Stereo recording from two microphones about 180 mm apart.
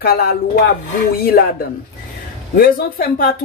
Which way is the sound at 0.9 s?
55° left (ahead or behind).